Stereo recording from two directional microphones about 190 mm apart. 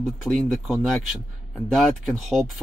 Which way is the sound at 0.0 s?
Centre (ahead or behind).